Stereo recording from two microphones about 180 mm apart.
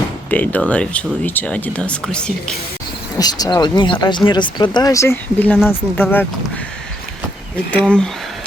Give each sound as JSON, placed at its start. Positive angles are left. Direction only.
{"t": 0.3, "sound": "speech", "side_deg": 10}
{"t": 3.2, "sound": "speech", "side_deg": 20}
{"t": 7.7, "sound": "speech", "side_deg": 5}